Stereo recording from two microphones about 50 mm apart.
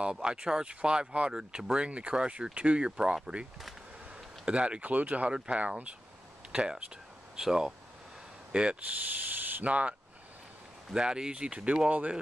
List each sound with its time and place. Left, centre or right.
0.0 s speech: centre
4.5 s speech: right
8.5 s speech: right
9.3 s a sound: right
9.7 s speech: right
10.9 s speech: centre